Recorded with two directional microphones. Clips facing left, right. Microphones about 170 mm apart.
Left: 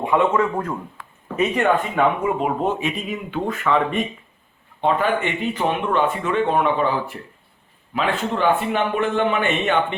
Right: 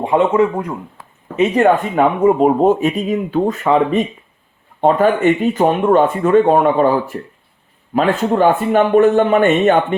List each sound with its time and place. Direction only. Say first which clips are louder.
0.0 s speech: right 5 dB; 30° right (ahead or behind)
0.5 s speech: right 3 dB; 15° right (ahead or behind)
0.9 s speech: right 7 dB; 35° right (ahead or behind)